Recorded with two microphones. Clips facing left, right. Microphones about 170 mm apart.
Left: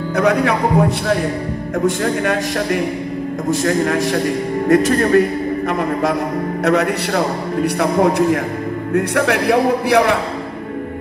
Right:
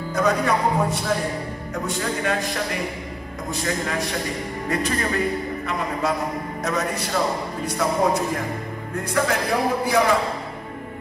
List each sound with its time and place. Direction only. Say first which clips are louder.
0.1 s a man's voice: left 5 dB; 65° left (ahead or behind)
2.0 s speech: left 6 dB; 50° left (ahead or behind)
6.6 s a man's voice: left 9 dB; 65° left (ahead or behind)